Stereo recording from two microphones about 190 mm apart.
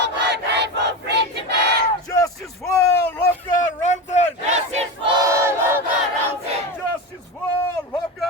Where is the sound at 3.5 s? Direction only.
40° left (ahead or behind).